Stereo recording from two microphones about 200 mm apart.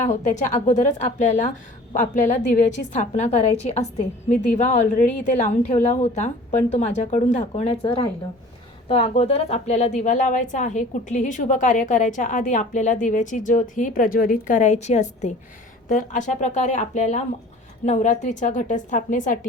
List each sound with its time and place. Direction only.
0.0 s a woman's voice: 35° left (ahead or behind)